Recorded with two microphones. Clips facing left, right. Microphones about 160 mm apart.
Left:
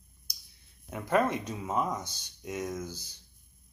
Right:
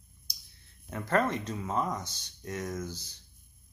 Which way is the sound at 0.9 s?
10° left (ahead or behind).